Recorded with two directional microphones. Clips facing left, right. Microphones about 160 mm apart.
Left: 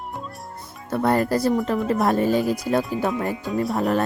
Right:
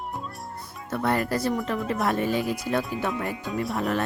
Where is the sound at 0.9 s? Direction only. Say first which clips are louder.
Left 5 dB; 40° left (ahead or behind).